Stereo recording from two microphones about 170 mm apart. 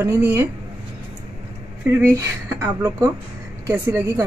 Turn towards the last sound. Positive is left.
turn(degrees=-15)  # may be behind; listen again after turning